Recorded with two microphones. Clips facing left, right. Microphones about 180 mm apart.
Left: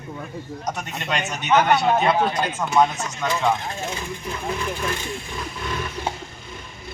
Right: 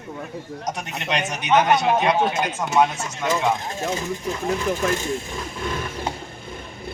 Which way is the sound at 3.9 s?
40° right (ahead or behind).